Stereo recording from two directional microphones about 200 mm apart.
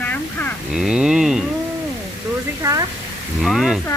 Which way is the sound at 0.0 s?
10° left (ahead or behind).